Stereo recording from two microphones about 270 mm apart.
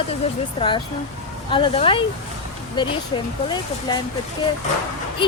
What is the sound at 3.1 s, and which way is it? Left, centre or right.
Speech, centre.